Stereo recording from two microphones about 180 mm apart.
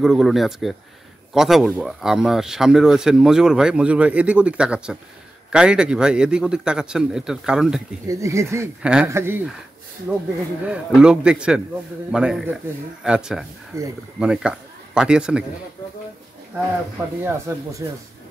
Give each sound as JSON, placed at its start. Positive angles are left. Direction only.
{"t": 0.0, "sound": "speech", "side_deg": 0}
{"t": 8.1, "sound": "speech", "side_deg": -15}
{"t": 13.7, "sound": "speech", "side_deg": -15}
{"t": 14.2, "sound": "a man's voice", "side_deg": -5}
{"t": 17.5, "sound": "speech", "side_deg": -15}